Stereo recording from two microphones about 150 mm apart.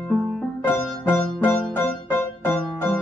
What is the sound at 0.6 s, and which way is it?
Music, 15° left (ahead or behind).